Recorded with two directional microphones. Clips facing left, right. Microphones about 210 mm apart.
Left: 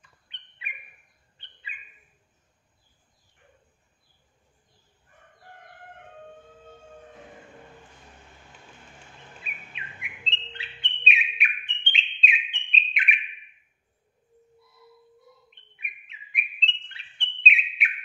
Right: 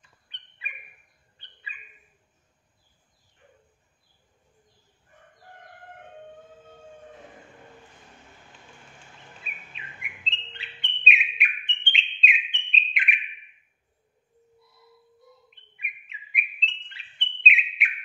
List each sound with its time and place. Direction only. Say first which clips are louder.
0.3 s bird: even; 25° left (ahead or behind)
10.3 s bird: left 3 dB; centre (ahead or behind)
15.5 s bird: right 2 dB; centre (ahead or behind)